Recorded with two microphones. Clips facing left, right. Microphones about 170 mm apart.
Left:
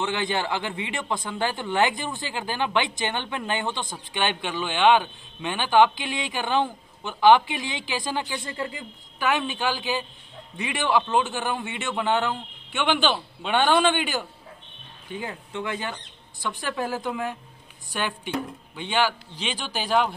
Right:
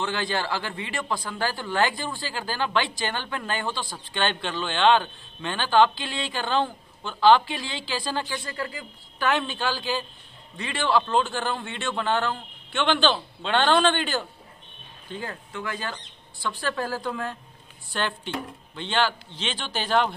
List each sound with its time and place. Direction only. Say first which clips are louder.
0.0 s speech: left 1 dB; 20° left (ahead or behind)
9.2 s a man's voice: even; 10° left (ahead or behind)